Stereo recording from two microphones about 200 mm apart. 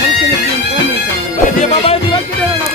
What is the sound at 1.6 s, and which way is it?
Music, 30° left (ahead or behind).